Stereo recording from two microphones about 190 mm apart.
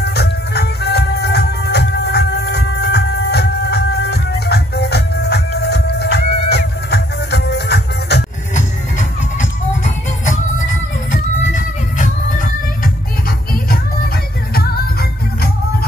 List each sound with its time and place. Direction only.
0.0 s music: 60° left (ahead or behind)
8.5 s music: 40° left (ahead or behind)